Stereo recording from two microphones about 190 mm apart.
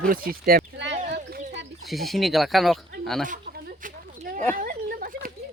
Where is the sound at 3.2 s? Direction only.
45° right (ahead or behind).